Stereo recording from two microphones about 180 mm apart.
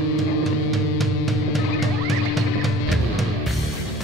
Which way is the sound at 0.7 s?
Centre (ahead or behind).